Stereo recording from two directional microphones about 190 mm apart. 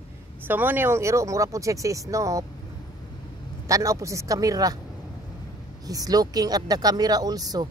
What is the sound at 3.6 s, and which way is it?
Speech, 15° right (ahead or behind).